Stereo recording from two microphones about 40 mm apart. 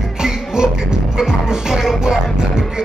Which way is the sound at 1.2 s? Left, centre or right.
Centre.